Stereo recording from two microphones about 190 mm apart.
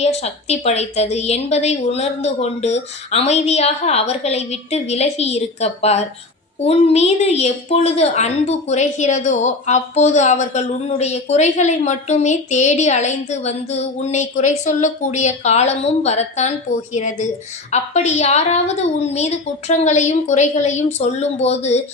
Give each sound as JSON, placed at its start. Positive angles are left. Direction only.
{"t": 0.0, "sound": "a woman's voice", "side_deg": 35}